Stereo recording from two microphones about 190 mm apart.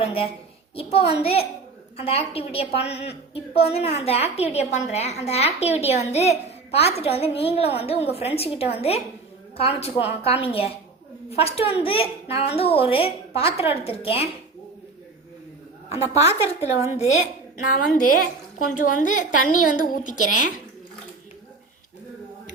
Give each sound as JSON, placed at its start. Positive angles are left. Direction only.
{"t": 0.0, "sound": "a child's voice", "side_deg": 30}
{"t": 16.6, "sound": "a woman's voice", "side_deg": -15}
{"t": 17.6, "sound": "a woman's voice", "side_deg": 45}